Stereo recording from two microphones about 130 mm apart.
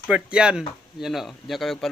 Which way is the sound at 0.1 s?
5° right (ahead or behind).